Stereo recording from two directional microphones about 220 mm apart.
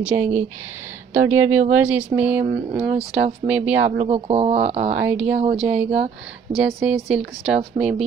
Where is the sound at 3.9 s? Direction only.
30° right (ahead or behind).